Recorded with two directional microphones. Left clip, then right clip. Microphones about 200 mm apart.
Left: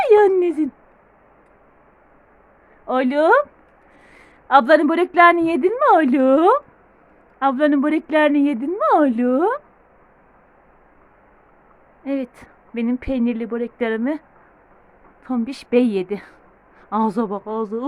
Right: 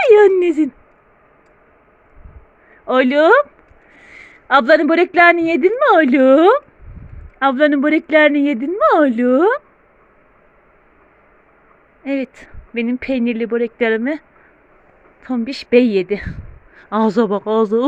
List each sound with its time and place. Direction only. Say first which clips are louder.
0.0 s a sound: right 4 dB; 10° right (ahead or behind)
2.8 s a woman's voice: right 5 dB; 10° right (ahead or behind)
12.0 s speech: right 3 dB; 5° right (ahead or behind)